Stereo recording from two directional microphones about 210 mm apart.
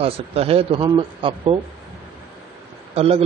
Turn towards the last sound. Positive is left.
turn(degrees=-30)  # may be behind; listen again after turning